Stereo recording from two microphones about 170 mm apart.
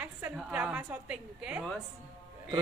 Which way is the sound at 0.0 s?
10° right (ahead or behind).